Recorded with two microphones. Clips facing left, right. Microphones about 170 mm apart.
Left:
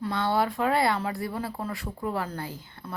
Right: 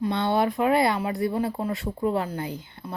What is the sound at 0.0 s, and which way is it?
Speech, 20° right (ahead or behind).